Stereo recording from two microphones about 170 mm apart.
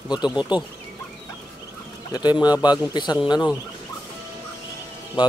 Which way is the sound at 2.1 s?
25° left (ahead or behind).